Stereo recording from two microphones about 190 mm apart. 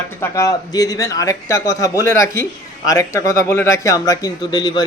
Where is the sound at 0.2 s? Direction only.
15° left (ahead or behind).